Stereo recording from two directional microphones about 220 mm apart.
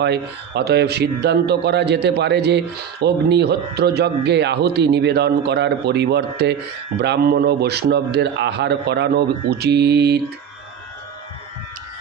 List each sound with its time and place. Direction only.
0.0 s a man's voice: 50° right (ahead or behind)